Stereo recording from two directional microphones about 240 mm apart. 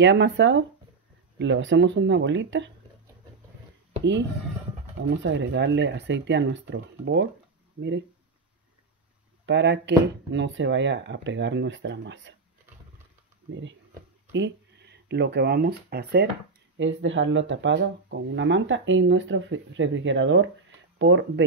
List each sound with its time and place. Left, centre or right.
0.0 s speech: right
4.0 s speech: right
9.5 s speech: right
14.3 s speech: right